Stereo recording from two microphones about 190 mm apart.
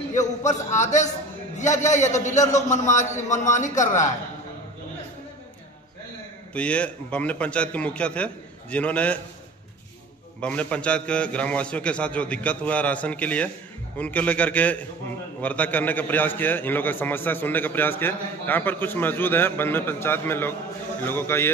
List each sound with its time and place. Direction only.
0.2 s a man's voice: 40° left (ahead or behind)
6.5 s a man's voice: 5° left (ahead or behind)
10.4 s a man's voice: 5° left (ahead or behind)